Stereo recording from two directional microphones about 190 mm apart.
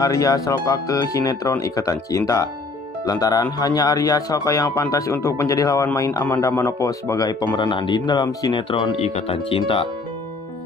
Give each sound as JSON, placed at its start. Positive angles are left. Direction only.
{"t": 0.0, "sound": "a man's voice", "side_deg": 15}